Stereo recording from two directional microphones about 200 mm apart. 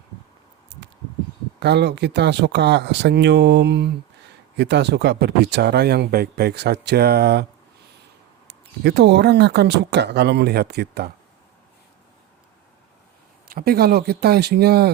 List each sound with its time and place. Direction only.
0.7 s a sound: 60° right (ahead or behind)
1.5 s speech: 60° right (ahead or behind)
8.4 s speech: 55° right (ahead or behind)
13.5 s speech: 50° right (ahead or behind)